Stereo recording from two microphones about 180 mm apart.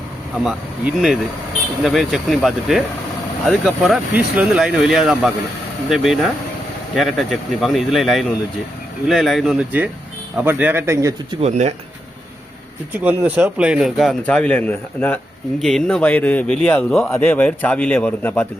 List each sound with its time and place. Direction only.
1.8 s speech: centre (ahead or behind); by 11.3 s 15° right (ahead or behind)
11.3 s speech: 40° right (ahead or behind)
12.9 s a man's voice: 10° right (ahead or behind); by 18.4 s 10° left (ahead or behind)